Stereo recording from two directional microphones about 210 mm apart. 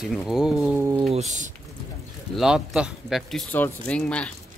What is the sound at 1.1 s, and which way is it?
Speech, 35° right (ahead or behind).